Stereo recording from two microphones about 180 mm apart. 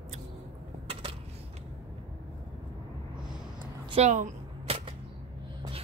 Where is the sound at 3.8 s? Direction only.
30° right (ahead or behind).